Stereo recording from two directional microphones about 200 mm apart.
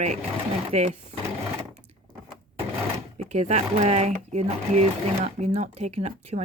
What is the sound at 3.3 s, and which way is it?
Speech, 35° right (ahead or behind).